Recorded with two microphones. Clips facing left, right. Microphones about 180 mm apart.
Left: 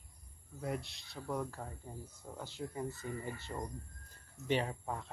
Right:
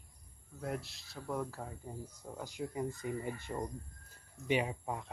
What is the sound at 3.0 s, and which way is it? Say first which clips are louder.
Speech: right 3 dB; 15° right (ahead or behind).